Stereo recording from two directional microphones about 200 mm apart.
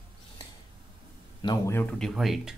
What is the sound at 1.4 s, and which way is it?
Speech, 20° left (ahead or behind).